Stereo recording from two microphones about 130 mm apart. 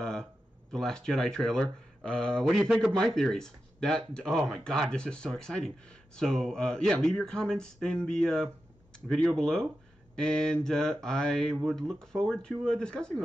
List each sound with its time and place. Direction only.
0.0 s speech: 5° left (ahead or behind)